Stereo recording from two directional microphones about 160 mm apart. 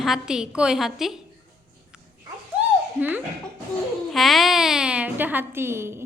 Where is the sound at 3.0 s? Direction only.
10° right (ahead or behind).